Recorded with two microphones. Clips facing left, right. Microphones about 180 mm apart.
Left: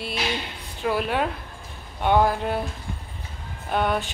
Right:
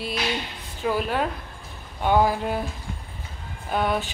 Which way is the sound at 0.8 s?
Centre (ahead or behind).